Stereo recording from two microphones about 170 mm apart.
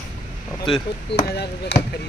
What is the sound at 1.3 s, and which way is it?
Speech, 70° left (ahead or behind).